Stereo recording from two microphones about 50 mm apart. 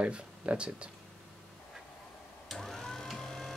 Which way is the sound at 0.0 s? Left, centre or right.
Right.